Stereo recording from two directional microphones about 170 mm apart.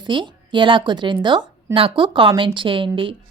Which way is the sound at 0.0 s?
30° right (ahead or behind).